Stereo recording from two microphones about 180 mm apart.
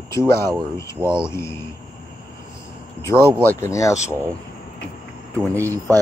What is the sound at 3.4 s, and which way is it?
Speech, 15° left (ahead or behind).